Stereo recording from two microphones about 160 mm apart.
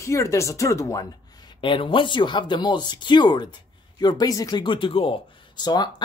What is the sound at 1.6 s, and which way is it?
Speech, 30° left (ahead or behind).